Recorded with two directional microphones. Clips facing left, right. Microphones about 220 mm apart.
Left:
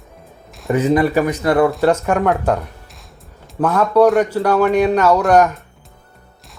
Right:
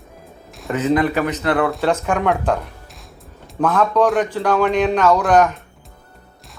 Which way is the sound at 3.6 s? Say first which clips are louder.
Left 3 dB; 10° left (ahead or behind).